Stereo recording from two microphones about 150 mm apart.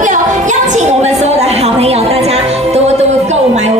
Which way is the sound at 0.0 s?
55° right (ahead or behind).